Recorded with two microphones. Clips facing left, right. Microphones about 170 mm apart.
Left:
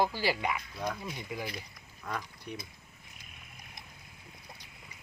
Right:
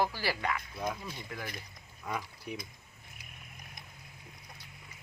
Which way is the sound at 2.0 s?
5° right (ahead or behind).